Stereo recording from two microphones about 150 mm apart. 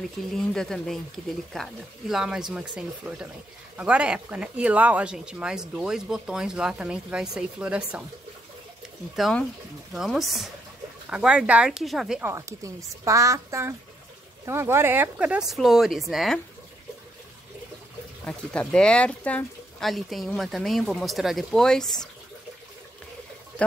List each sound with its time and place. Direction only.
0.2 s speech: 5° left (ahead or behind)
9.1 s speech: centre (ahead or behind)
12.2 s a sound: 20° right (ahead or behind)
14.4 s speech: 15° right (ahead or behind); by 16.3 s centre (ahead or behind)
18.2 s speech: 10° left (ahead or behind)